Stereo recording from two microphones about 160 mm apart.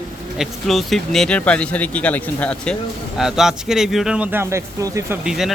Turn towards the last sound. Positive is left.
turn(degrees=0)  # may be behind; listen again after turning